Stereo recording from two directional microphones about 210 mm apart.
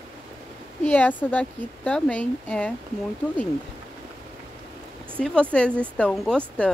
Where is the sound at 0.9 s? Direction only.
10° left (ahead or behind).